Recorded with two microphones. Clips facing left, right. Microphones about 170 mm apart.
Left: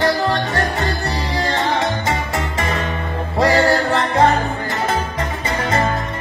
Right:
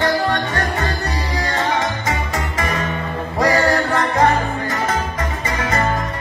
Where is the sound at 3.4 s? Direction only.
30° left (ahead or behind).